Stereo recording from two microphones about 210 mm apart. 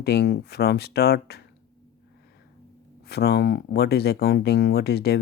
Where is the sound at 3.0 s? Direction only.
50° left (ahead or behind).